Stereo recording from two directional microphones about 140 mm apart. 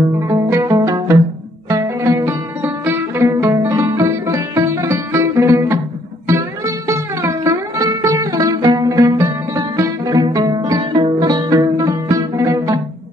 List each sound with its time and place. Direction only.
0.2 s music: 20° right (ahead or behind)